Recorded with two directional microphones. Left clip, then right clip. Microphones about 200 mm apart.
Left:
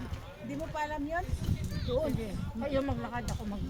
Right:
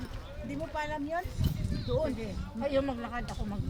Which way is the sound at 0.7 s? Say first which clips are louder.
Even; 10° right (ahead or behind).